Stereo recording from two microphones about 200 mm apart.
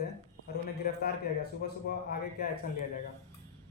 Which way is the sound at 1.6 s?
50° left (ahead or behind).